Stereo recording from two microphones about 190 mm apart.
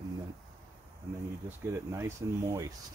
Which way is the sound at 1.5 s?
15° right (ahead or behind).